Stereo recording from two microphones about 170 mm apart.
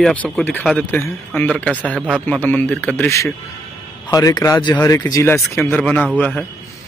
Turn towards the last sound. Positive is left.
turn(degrees=10)  # may be behind; listen again after turning